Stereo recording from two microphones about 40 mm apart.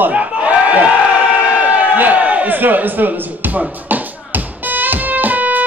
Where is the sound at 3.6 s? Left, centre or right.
Right.